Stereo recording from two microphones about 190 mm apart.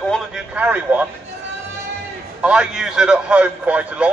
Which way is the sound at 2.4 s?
5° right (ahead or behind).